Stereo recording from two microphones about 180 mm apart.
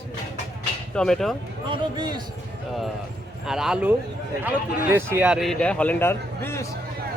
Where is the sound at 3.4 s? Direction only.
5° right (ahead or behind); by 6.6 s 15° left (ahead or behind).